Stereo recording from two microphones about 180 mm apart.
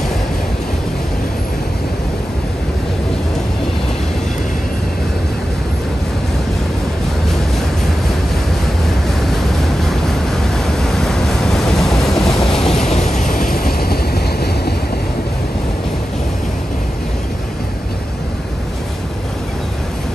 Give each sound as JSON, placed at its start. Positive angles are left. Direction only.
{"t": 9.2, "sound": "vehicle", "side_deg": 0}
{"t": 12.8, "sound": "vehicle", "side_deg": 40}